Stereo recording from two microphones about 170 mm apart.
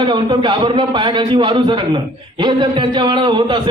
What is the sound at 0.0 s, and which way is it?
Speech, 30° right (ahead or behind).